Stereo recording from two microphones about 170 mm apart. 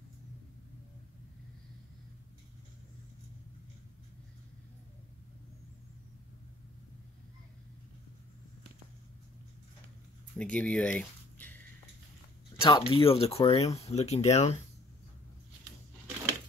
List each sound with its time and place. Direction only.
10.3 s speech: 10° left (ahead or behind)
12.5 s speech: 30° left (ahead or behind)